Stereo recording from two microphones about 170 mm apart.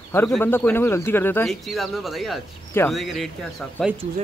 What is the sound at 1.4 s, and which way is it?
Speech, centre (ahead or behind).